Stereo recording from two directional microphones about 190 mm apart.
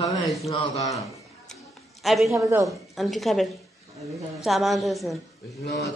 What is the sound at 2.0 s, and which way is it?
Speech, centre (ahead or behind).